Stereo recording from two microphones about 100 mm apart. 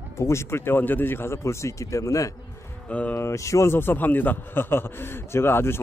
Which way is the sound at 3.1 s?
30° left (ahead or behind).